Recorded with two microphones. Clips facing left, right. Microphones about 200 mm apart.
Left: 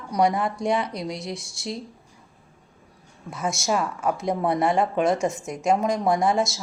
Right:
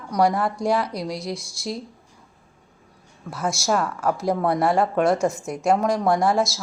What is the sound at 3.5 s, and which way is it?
Speech, 20° left (ahead or behind).